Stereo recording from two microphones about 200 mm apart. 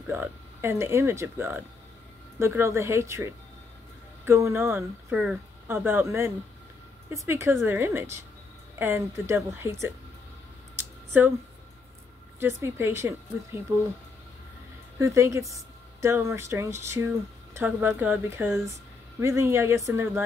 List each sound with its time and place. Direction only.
0.0 s speech: 10° right (ahead or behind)
10.8 s a sound: 10° right (ahead or behind)
12.4 s speech: 15° right (ahead or behind)
15.0 s speech: 15° right (ahead or behind)